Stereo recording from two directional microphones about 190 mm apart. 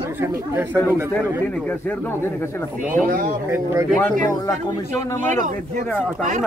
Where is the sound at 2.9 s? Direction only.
45° right (ahead or behind).